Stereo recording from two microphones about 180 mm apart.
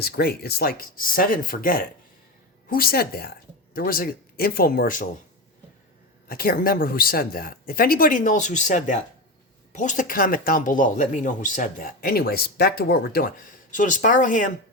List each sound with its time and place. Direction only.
0.0 s speech: 60° left (ahead or behind)
6.2 s speech: 55° left (ahead or behind)